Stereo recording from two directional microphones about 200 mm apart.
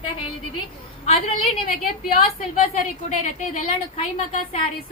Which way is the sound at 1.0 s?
30° left (ahead or behind).